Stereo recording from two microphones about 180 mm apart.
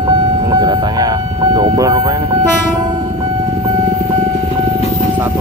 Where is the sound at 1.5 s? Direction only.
20° right (ahead or behind).